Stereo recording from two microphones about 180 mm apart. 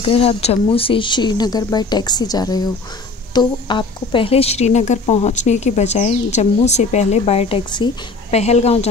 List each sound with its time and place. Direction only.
0.0 s a woman's voice: 35° left (ahead or behind)